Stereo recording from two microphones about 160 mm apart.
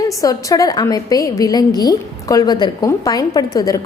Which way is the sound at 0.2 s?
20° left (ahead or behind).